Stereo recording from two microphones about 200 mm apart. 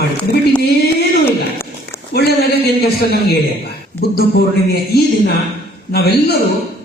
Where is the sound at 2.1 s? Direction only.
50° left (ahead or behind).